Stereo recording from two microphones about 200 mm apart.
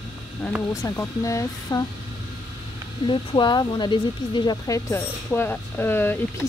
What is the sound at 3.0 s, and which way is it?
Speech, 25° left (ahead or behind).